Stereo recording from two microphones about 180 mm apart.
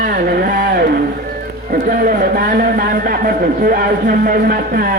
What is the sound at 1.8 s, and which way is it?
A man's voice, 50° right (ahead or behind).